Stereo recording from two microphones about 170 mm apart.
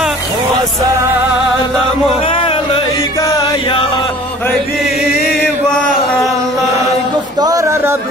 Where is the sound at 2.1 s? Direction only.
35° left (ahead or behind).